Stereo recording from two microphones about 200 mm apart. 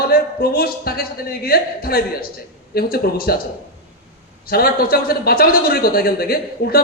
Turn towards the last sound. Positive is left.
turn(degrees=50)  # may be behind; listen again after turning